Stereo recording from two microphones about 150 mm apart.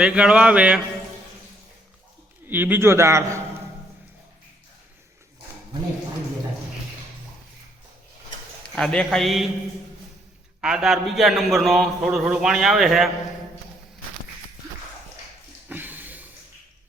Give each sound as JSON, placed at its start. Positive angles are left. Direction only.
{"t": 0.0, "sound": "a man's voice", "side_deg": -5}
{"t": 2.5, "sound": "a man's voice", "side_deg": -15}
{"t": 8.7, "sound": "a man's voice", "side_deg": 5}
{"t": 10.6, "sound": "a man's voice", "side_deg": -5}
{"t": 15.7, "sound": "a sound", "side_deg": -10}